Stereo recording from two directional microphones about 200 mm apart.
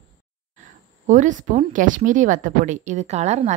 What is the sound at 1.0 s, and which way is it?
A woman's voice, 40° right (ahead or behind).